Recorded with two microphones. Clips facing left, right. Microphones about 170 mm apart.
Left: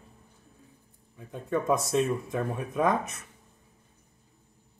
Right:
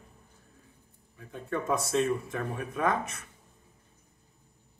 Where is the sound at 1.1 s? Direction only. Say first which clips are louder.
Left 4 dB; 15° left (ahead or behind).